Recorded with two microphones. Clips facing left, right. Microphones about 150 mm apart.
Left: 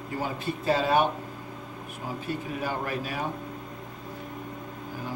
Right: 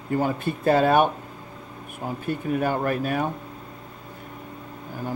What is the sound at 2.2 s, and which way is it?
Speech, 55° right (ahead or behind).